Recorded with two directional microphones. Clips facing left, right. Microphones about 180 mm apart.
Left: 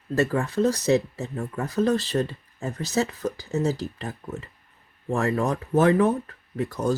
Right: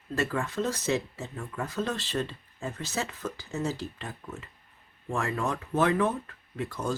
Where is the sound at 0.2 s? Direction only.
35° left (ahead or behind).